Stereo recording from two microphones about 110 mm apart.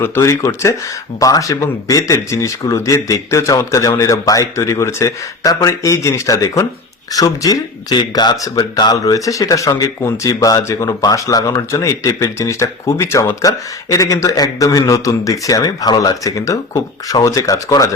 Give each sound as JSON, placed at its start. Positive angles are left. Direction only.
{"t": 0.0, "sound": "speech", "side_deg": 25}